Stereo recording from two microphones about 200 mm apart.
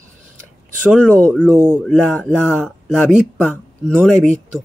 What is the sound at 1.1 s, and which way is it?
Speech, 5° left (ahead or behind).